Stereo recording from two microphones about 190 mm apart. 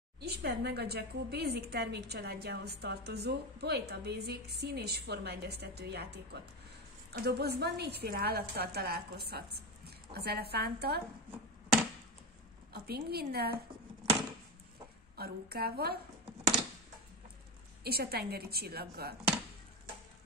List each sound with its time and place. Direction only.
0.2 s a woman's voice: 60° right (ahead or behind)
12.7 s a woman's voice: 55° right (ahead or behind)
15.1 s a woman's voice: 55° right (ahead or behind)
17.8 s a woman's voice: 55° right (ahead or behind)